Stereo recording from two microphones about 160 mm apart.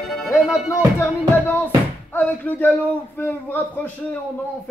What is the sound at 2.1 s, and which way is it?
Speech, 10° left (ahead or behind).